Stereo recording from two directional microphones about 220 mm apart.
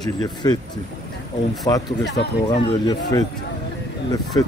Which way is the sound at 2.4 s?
20° left (ahead or behind).